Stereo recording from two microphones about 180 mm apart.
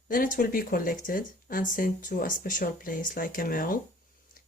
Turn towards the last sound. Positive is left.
turn(degrees=50)  # may be behind; listen again after turning